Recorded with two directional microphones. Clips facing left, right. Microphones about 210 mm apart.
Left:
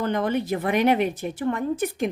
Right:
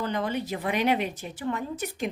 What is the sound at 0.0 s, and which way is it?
Speech, 55° left (ahead or behind).